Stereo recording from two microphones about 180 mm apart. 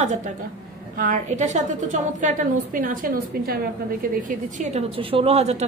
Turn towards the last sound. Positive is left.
turn(degrees=-35)  # may be behind; listen again after turning